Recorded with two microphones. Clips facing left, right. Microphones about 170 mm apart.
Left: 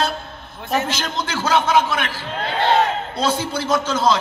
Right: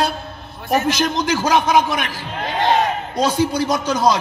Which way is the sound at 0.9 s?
15° right (ahead or behind).